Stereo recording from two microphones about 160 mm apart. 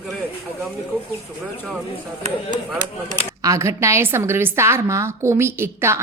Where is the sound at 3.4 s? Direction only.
20° right (ahead or behind).